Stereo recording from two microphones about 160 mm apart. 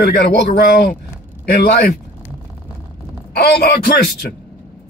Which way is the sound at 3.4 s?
85° left.